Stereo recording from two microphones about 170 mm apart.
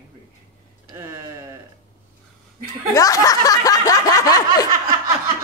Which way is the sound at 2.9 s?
20° left (ahead or behind).